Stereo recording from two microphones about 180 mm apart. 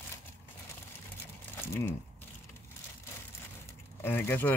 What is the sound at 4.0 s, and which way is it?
Speech, 15° left (ahead or behind).